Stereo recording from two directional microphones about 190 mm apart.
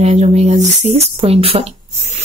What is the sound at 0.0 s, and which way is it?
Speech, 35° right (ahead or behind).